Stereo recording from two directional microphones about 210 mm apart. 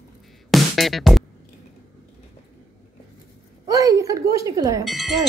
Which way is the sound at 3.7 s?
15° right (ahead or behind).